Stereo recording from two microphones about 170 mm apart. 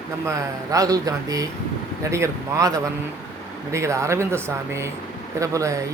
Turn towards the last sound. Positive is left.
turn(degrees=-20)  # may be behind; listen again after turning